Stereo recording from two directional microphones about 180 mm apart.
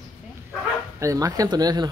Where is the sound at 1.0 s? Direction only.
20° right (ahead or behind).